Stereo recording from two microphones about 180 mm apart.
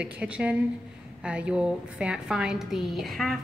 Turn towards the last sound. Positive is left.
turn(degrees=0)  # may be behind; listen again after turning